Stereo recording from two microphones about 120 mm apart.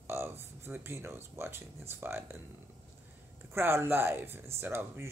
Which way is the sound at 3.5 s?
20° right (ahead or behind).